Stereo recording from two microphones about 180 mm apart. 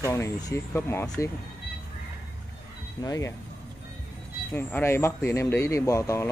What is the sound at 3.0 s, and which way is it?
Speech, 20° left (ahead or behind).